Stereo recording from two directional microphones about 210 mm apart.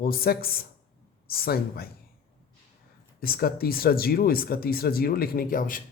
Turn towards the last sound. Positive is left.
turn(degrees=40)  # may be behind; listen again after turning